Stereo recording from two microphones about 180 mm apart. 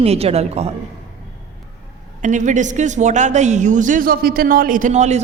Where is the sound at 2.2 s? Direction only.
45° right (ahead or behind).